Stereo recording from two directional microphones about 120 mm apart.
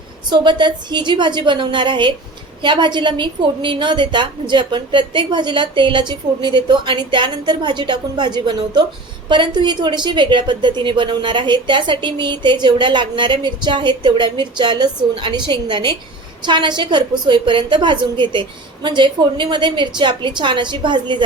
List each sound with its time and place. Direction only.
0.3 s speech: 40° right (ahead or behind)